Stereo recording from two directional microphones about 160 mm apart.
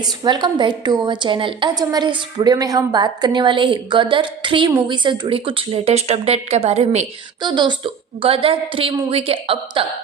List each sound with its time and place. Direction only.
0.0 s a woman's voice: 25° right (ahead or behind); by 7.1 s 45° right (ahead or behind)
7.4 s speech: 30° right (ahead or behind)